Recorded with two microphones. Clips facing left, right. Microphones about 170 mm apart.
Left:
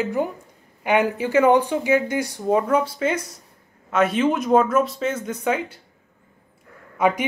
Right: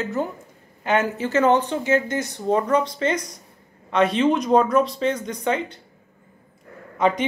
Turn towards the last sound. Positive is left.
turn(degrees=10)  # may be behind; listen again after turning